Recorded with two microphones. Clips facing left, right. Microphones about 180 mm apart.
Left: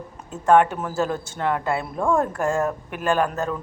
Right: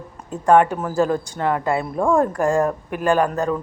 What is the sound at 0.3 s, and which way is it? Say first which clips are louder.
A man's voice: right 2 dB; centre (ahead or behind).